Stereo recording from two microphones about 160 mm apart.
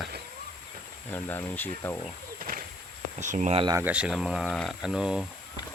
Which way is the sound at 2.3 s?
60° right (ahead or behind).